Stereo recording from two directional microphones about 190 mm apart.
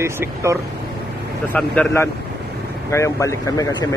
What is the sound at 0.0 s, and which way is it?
Speech, 15° right (ahead or behind).